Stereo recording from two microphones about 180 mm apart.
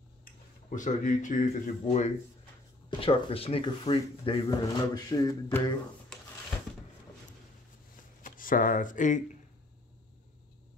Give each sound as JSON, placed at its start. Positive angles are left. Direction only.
{"t": 0.2, "sound": "speech", "side_deg": 45}
{"t": 3.0, "sound": "speech", "side_deg": 30}
{"t": 8.2, "sound": "speech", "side_deg": 50}